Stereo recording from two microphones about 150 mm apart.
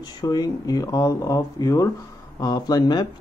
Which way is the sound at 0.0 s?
25° left (ahead or behind).